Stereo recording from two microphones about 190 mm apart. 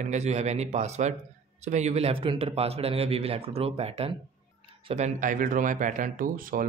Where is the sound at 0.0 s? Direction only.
35° right (ahead or behind).